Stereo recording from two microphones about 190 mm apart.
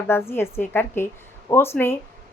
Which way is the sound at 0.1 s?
10° left (ahead or behind).